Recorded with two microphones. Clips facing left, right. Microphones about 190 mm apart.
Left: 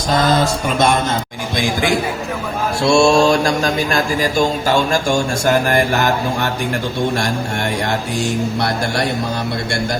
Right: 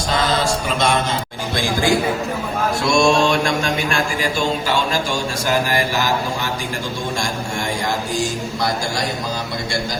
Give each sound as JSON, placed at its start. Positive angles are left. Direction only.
{"t": 1.5, "sound": "speech", "side_deg": 15}
{"t": 2.8, "sound": "mantra", "side_deg": 30}
{"t": 7.2, "sound": "speech", "side_deg": 65}